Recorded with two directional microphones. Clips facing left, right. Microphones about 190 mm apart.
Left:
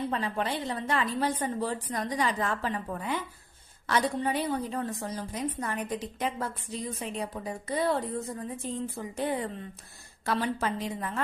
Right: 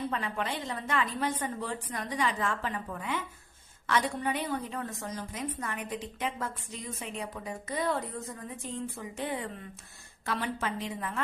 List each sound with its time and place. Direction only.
0.1 s a woman's voice: 35° left (ahead or behind)